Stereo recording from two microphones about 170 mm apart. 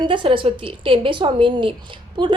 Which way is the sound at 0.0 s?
30° right (ahead or behind).